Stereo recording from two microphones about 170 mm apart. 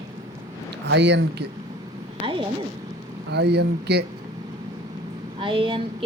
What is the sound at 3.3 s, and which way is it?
Speech, 75° right (ahead or behind).